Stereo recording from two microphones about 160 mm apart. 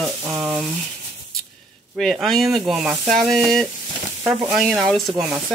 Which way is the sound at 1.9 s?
Centre (ahead or behind).